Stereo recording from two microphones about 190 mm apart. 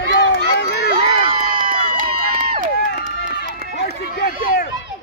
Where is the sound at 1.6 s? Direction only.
45° right (ahead or behind).